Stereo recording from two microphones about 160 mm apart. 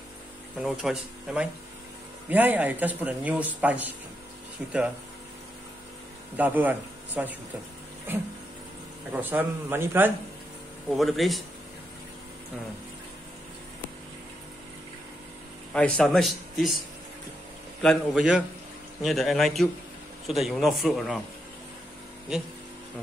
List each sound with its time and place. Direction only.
0.6 s speech: 5° right (ahead or behind)
6.3 s speech: 10° right (ahead or behind)
9.1 s speech: 10° right (ahead or behind)
11.0 s speech: centre (ahead or behind)
15.7 s speech: 5° left (ahead or behind)
17.8 s speech: 5° right (ahead or behind)